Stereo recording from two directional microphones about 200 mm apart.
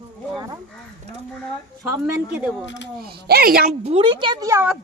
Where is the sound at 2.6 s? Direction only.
65° left (ahead or behind).